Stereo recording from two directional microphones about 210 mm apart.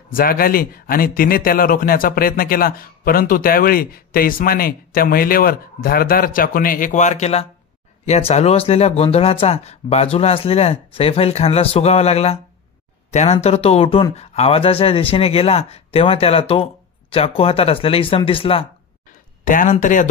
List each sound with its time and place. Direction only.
0.1 s speech: 45° left (ahead or behind); by 18.7 s 25° left (ahead or behind)
19.4 s speech: 40° left (ahead or behind)